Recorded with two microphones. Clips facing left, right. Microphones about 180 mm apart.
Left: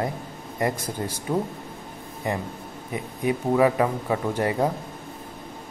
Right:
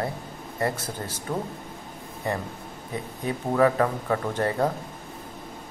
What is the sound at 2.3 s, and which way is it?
Speech, 15° left (ahead or behind).